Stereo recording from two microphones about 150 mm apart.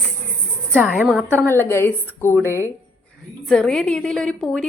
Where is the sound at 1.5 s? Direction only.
15° left (ahead or behind).